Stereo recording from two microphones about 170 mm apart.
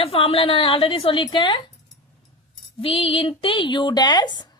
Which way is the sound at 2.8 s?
35° left (ahead or behind).